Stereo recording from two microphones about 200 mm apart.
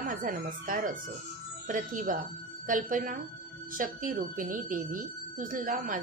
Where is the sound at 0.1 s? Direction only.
45° right (ahead or behind).